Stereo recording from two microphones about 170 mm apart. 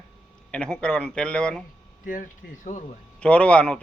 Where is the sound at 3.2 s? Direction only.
5° left (ahead or behind).